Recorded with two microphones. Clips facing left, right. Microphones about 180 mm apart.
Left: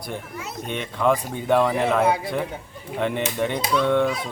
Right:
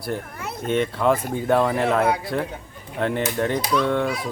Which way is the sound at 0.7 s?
Centre (ahead or behind).